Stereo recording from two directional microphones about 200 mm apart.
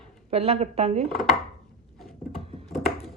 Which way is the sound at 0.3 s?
30° right (ahead or behind).